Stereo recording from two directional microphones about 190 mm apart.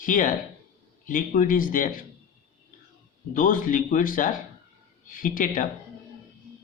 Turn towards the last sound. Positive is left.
turn(degrees=45)  # may be behind; listen again after turning